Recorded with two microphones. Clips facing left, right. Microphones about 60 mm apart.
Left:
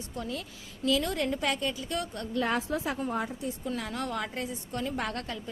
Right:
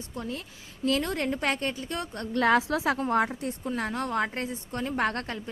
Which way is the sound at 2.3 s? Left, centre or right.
Right.